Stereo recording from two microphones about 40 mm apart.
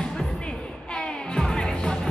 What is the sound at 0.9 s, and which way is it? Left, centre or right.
Music, centre.